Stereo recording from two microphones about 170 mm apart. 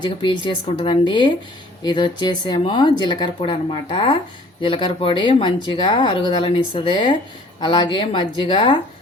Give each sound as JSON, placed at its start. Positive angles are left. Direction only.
{"t": 0.0, "sound": "speech", "side_deg": 30}